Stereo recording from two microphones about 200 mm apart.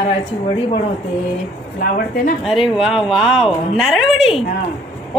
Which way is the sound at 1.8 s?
45° left (ahead or behind).